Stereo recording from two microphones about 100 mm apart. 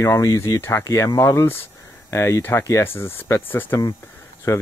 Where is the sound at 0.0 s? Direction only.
30° left (ahead or behind).